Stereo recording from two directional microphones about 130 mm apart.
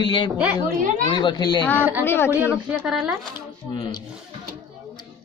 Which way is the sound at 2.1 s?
15° left (ahead or behind).